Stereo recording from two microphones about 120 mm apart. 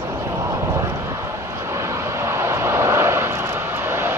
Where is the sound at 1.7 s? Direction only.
25° right (ahead or behind).